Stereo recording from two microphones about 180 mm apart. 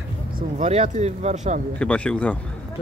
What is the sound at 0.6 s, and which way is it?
Speech, 40° right (ahead or behind).